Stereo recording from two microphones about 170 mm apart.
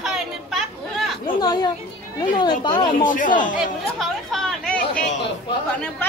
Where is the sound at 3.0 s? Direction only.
50° left (ahead or behind).